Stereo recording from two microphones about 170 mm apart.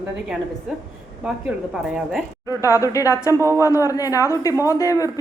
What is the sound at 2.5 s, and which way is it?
Speech, 20° left (ahead or behind).